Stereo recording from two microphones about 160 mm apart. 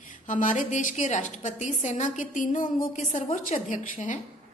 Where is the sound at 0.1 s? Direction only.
55° left (ahead or behind).